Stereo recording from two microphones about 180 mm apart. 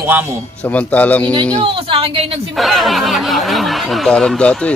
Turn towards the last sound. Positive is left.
turn(degrees=5)  # may be behind; listen again after turning